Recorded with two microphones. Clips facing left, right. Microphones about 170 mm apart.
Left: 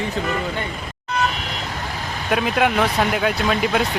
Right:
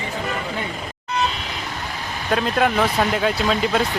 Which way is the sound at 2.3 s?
5° left (ahead or behind).